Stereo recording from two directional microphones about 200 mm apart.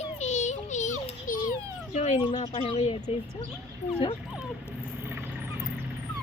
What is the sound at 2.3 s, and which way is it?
Speech, 35° left (ahead or behind).